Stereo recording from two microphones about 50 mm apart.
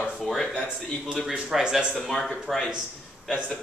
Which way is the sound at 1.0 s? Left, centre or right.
Centre.